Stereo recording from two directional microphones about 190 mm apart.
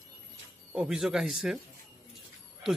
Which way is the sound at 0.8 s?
5° right (ahead or behind).